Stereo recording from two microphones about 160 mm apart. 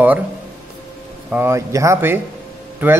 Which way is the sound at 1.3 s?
15° right (ahead or behind).